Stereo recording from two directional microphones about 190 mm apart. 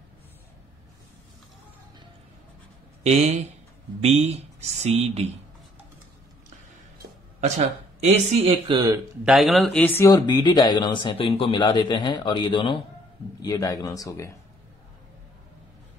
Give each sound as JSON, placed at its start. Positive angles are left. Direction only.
{"t": 3.0, "sound": "speech", "side_deg": -35}
{"t": 7.3, "sound": "a man's voice", "side_deg": -40}
{"t": 8.7, "sound": "speech", "side_deg": -20}
{"t": 9.2, "sound": "speech", "side_deg": 0}
{"t": 10.0, "sound": "speech", "side_deg": 20}